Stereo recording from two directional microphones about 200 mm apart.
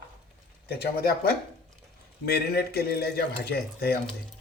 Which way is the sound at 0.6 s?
50° left (ahead or behind).